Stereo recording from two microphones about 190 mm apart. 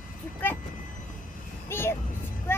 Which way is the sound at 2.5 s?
15° left (ahead or behind).